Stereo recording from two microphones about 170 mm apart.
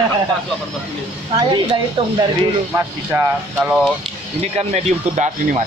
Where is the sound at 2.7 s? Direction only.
10° right (ahead or behind).